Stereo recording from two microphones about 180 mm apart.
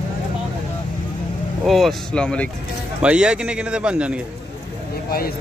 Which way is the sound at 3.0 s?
5° right (ahead or behind).